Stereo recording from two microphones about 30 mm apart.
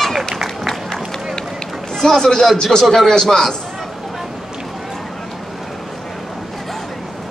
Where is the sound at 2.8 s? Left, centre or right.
Centre.